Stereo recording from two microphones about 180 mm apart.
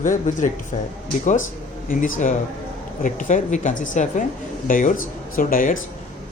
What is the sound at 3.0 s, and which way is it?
Speech, 45° left (ahead or behind).